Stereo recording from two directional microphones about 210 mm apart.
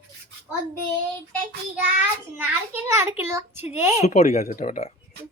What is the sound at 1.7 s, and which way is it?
A child's voice, 10° right (ahead or behind).